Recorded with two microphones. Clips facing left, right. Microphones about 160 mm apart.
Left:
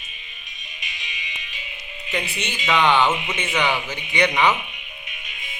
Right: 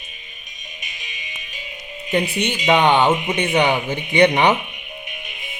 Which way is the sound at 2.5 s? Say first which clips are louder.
Right 3 dB; 40° right (ahead or behind).